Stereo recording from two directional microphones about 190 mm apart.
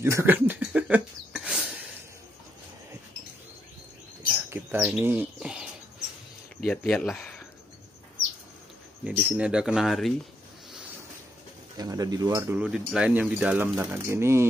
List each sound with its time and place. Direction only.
0.0 s a sound: 10° right (ahead or behind)
4.5 s bird: 10° right (ahead or behind)
6.6 s speech: 5° left (ahead or behind)
9.0 s speech: 5° right (ahead or behind)
11.7 s speech: 20° right (ahead or behind)
12.6 s speech: 5° right (ahead or behind)